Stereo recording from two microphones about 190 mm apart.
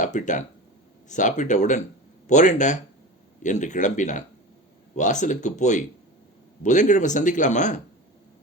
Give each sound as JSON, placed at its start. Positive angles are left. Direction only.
{"t": 0.0, "sound": "speech", "side_deg": 40}